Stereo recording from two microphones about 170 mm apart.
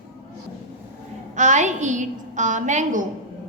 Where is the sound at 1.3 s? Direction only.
45° right (ahead or behind).